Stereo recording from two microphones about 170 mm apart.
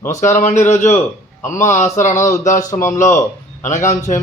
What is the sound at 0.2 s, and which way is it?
Speech, 45° left (ahead or behind).